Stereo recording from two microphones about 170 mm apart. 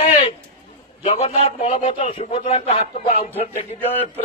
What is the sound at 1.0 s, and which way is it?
A man's voice, 40° left (ahead or behind).